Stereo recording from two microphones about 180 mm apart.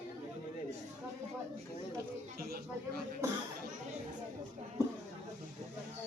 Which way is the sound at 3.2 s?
15° right (ahead or behind).